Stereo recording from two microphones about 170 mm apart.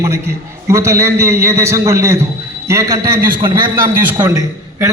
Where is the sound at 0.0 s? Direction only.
15° right (ahead or behind).